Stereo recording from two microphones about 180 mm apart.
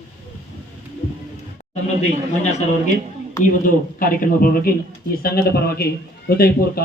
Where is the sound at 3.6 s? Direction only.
50° left (ahead or behind).